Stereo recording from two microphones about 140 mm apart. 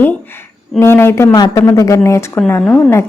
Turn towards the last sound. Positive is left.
turn(degrees=20)  # may be behind; listen again after turning